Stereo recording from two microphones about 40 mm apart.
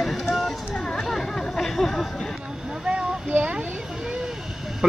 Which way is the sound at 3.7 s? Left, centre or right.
Centre.